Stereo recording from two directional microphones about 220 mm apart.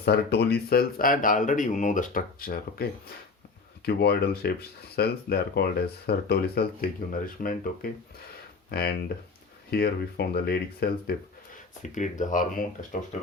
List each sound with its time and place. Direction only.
0.0 s speech: 45° left (ahead or behind)